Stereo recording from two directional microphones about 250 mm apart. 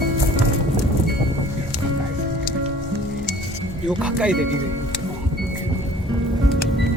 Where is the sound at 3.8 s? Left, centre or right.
Centre.